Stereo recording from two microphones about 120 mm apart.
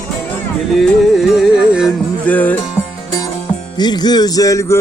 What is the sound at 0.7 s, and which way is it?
Music, centre (ahead or behind).